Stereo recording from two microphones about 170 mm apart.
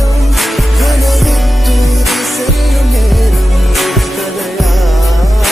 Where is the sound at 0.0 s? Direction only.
Centre (ahead or behind).